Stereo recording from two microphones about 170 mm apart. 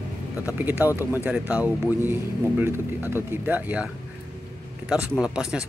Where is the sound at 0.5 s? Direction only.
10° right (ahead or behind).